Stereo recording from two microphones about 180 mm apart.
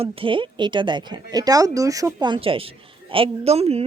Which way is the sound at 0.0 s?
30° right (ahead or behind).